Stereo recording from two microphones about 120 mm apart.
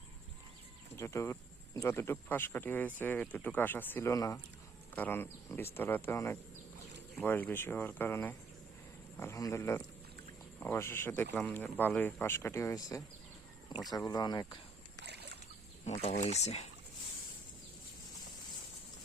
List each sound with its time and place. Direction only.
0.9 s speech: 25° left (ahead or behind)
4.1 s speech: 30° left (ahead or behind)
4.9 s speech: 15° left (ahead or behind); by 14.6 s 35° left (ahead or behind)
15.8 s speech: 75° left (ahead or behind)